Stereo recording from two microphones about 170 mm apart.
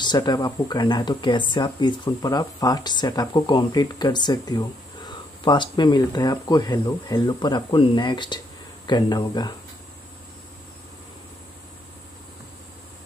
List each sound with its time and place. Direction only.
0.0 s speech: 25° left (ahead or behind)